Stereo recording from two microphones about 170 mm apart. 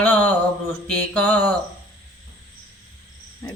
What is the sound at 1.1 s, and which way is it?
Speech, 10° left (ahead or behind).